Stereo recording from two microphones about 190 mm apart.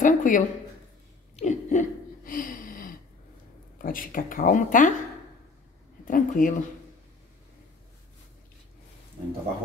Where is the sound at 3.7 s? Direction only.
45° left (ahead or behind).